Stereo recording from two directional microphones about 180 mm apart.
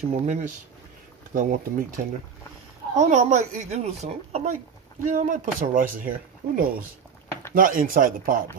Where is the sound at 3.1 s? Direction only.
40° right (ahead or behind).